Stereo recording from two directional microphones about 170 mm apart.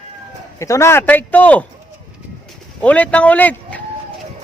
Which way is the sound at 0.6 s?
15° left (ahead or behind).